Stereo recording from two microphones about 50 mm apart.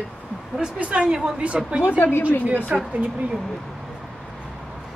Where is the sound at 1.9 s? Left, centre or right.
Left.